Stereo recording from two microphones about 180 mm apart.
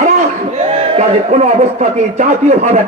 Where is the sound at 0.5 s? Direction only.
35° right (ahead or behind).